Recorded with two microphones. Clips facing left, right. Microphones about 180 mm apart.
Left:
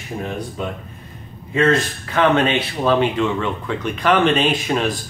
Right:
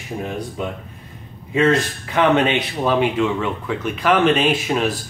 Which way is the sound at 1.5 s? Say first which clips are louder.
Even; 15° right (ahead or behind).